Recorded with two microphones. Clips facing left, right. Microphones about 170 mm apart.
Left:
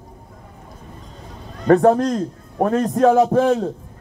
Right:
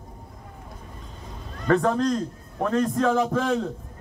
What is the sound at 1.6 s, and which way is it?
A man's voice, 40° left (ahead or behind).